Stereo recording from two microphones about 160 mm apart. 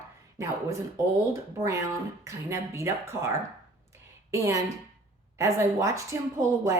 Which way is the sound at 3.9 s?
15° right (ahead or behind).